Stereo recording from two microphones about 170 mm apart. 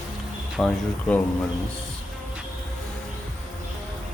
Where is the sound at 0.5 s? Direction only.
5° left (ahead or behind).